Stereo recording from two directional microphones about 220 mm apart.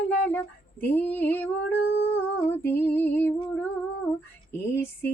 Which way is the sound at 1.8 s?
45° left (ahead or behind).